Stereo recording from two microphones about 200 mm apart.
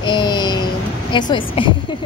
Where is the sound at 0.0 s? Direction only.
20° left (ahead or behind).